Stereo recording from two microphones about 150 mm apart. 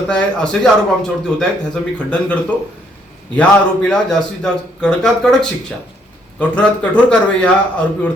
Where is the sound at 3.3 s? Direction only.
10° left (ahead or behind).